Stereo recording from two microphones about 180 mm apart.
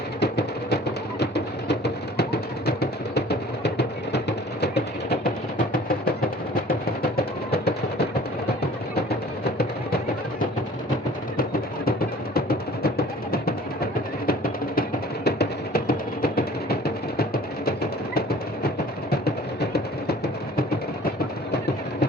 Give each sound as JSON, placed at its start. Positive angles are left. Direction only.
{"t": 0.2, "sound": "music", "side_deg": 70}
{"t": 7.2, "sound": "a sound", "side_deg": 60}
{"t": 11.9, "sound": "music", "side_deg": 55}
{"t": 19.2, "sound": "music", "side_deg": 60}